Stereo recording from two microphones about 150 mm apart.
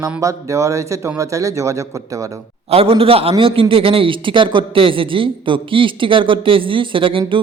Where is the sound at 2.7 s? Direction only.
40° right (ahead or behind).